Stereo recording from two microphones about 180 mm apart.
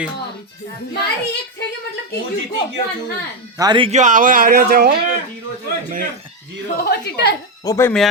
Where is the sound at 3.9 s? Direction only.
45° right (ahead or behind).